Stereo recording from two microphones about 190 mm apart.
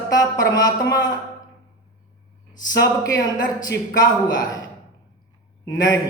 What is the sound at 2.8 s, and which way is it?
Speech, 20° left (ahead or behind).